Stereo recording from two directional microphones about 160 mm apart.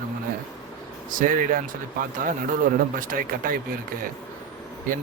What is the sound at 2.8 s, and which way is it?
Speech, 60° right (ahead or behind).